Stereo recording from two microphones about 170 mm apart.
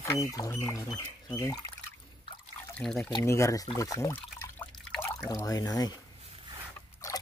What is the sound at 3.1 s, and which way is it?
Speech, 20° left (ahead or behind).